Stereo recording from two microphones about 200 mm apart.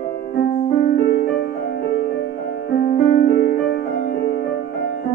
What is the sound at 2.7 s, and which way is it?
Music, 50° left (ahead or behind).